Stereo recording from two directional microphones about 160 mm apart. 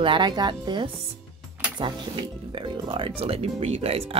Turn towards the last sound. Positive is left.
turn(degrees=-40)  # may be behind; listen again after turning